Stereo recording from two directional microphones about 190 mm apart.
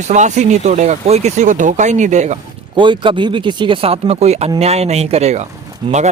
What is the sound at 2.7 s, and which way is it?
Speech, 25° right (ahead or behind).